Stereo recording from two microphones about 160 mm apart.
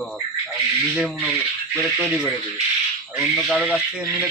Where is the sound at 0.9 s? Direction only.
5° right (ahead or behind).